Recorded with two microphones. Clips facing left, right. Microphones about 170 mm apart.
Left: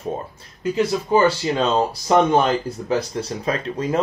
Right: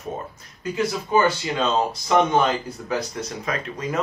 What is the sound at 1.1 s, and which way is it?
Speech, 35° left (ahead or behind).